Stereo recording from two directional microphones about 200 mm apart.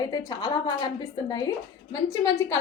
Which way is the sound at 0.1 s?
20° left (ahead or behind).